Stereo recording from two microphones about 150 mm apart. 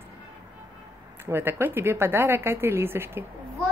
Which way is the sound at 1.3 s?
15° right (ahead or behind).